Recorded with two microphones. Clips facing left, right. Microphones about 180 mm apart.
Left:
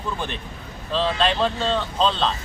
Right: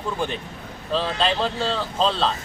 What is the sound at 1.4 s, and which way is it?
Speech, centre (ahead or behind).